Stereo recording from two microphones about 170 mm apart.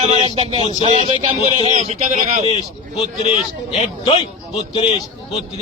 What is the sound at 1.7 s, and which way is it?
Speech, 45° right (ahead or behind).